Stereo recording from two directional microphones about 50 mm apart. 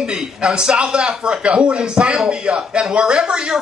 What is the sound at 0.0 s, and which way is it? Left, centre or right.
Speech, centre.